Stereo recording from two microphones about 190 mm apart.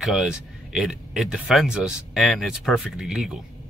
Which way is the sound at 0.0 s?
Centre (ahead or behind).